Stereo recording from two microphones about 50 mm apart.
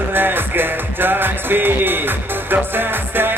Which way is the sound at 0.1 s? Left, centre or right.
Right.